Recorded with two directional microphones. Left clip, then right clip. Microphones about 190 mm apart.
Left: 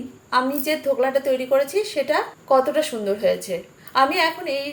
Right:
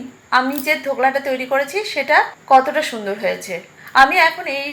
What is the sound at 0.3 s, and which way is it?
A woman's voice, 15° left (ahead or behind).